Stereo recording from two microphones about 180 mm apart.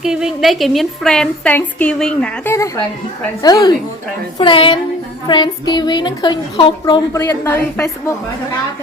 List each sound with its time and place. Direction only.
0.0 s a woman's voice: 5° right (ahead or behind); by 7.6 s 20° left (ahead or behind)